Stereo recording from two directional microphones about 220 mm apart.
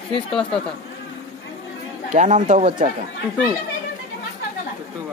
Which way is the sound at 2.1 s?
35° right (ahead or behind).